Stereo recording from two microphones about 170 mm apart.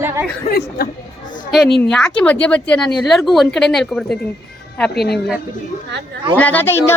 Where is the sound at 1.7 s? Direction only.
75° left (ahead or behind).